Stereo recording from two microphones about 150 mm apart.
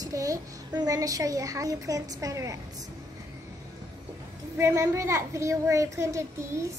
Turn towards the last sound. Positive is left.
turn(degrees=-20)  # may be behind; listen again after turning